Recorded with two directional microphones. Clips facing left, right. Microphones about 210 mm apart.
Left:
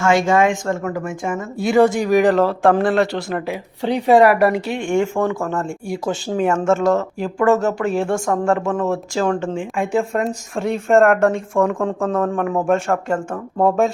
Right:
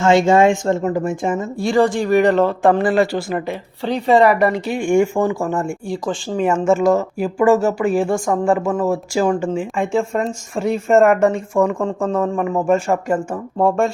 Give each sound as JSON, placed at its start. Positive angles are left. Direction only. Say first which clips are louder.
{"t": 0.0, "sound": "speech", "louder": "right 3 dB", "side_deg": -25}
{"t": 1.5, "sound": "speech", "louder": "left 3 dB", "side_deg": 5}
{"t": 3.8, "sound": "speech", "louder": "left 1 dB", "side_deg": 10}
{"t": 5.9, "sound": "speech", "louder": "left 3 dB", "side_deg": 5}